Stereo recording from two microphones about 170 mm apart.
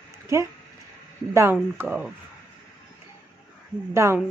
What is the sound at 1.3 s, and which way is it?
Speech, 15° right (ahead or behind).